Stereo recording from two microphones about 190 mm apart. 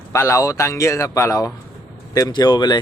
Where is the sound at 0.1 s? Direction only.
15° left (ahead or behind).